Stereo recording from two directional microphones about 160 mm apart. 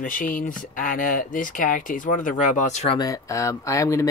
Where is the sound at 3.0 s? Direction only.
20° left (ahead or behind).